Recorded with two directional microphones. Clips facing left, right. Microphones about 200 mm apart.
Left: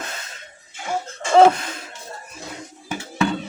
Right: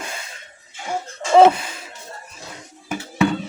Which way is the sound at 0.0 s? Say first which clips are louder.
Right 1 dB; 10° right (ahead or behind).